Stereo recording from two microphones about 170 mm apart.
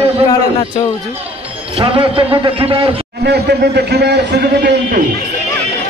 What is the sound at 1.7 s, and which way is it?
A man's voice, 35° right (ahead or behind).